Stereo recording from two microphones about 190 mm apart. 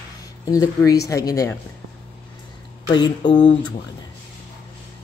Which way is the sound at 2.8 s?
25° left (ahead or behind).